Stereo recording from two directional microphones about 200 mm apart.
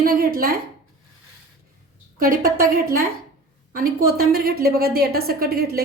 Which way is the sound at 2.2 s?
45° right (ahead or behind).